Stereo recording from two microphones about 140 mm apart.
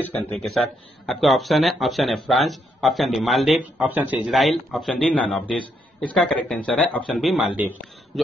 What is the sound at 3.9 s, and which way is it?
Speech, 15° right (ahead or behind).